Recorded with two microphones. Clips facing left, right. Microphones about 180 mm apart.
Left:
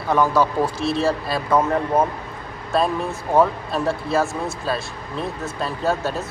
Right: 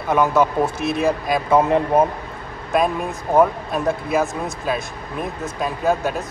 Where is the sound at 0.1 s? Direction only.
20° right (ahead or behind).